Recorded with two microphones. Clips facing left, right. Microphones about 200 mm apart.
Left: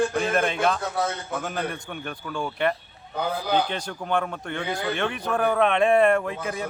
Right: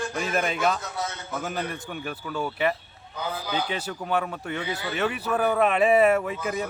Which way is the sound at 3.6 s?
5° right (ahead or behind).